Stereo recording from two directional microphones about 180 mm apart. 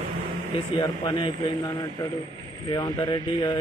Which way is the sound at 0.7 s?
25° left (ahead or behind).